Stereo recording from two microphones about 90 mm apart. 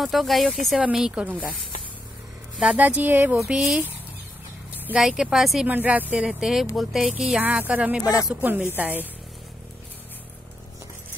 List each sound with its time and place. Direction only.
0.0 s speech: centre (ahead or behind)
2.6 s speech: 15° right (ahead or behind)
3.3 s speech: 5° right (ahead or behind)
4.8 s speech: 10° right (ahead or behind)
5.7 s speech: 20° right (ahead or behind)